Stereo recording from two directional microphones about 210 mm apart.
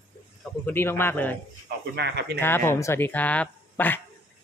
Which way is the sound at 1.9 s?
50° right (ahead or behind).